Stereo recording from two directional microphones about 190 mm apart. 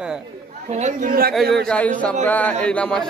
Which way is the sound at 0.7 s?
40° right (ahead or behind).